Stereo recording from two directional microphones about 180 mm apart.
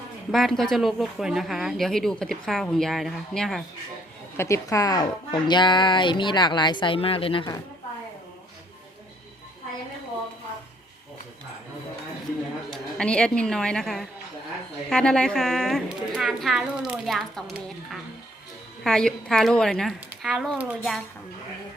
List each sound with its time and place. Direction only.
0.3 s speech: centre (ahead or behind)
4.4 s speech: 15° left (ahead or behind)
12.7 s a woman's voice: 5° left (ahead or behind)